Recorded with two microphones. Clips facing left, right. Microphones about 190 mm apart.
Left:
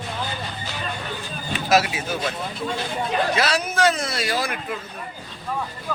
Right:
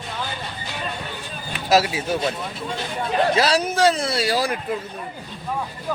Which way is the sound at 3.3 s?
35° right (ahead or behind).